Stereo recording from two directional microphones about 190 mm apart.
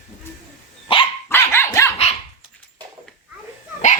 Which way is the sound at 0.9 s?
30° left (ahead or behind).